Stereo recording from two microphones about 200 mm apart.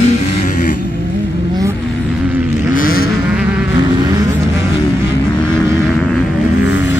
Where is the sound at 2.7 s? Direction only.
45° left (ahead or behind).